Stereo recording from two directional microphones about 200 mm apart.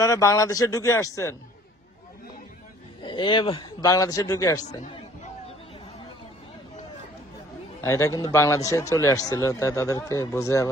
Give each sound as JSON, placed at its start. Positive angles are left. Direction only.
{"t": 0.0, "sound": "a man's voice", "side_deg": 15}
{"t": 3.0, "sound": "speech", "side_deg": 25}
{"t": 7.8, "sound": "a man's voice", "side_deg": 15}